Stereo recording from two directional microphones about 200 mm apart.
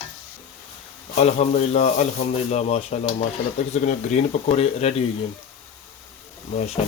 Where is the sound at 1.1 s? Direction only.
35° left (ahead or behind).